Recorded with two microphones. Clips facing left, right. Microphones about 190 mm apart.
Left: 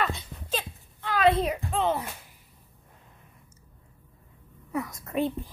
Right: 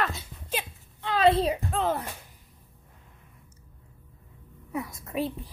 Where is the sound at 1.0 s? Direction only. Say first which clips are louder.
Right 1 dB; 25° right (ahead or behind).